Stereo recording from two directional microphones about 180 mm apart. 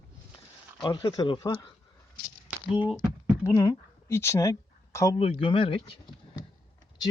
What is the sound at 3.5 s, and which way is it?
A woman's voice, 15° left (ahead or behind).